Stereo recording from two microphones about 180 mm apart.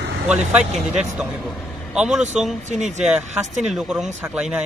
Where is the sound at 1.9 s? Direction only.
5° right (ahead or behind).